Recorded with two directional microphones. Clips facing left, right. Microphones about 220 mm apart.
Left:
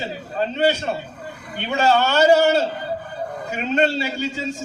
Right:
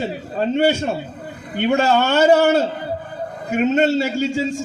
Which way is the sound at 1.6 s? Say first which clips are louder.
Right 3 dB; 50° right (ahead or behind).